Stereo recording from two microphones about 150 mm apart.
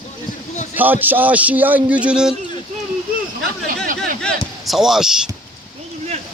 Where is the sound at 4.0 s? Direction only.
Centre (ahead or behind).